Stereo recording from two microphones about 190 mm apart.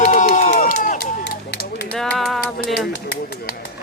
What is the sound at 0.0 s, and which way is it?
Run, 45° left (ahead or behind).